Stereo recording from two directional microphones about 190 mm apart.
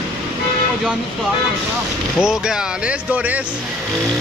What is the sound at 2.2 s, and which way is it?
Speech, 5° right (ahead or behind).